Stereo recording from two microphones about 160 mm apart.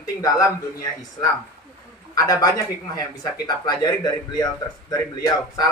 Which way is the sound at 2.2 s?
20° left (ahead or behind).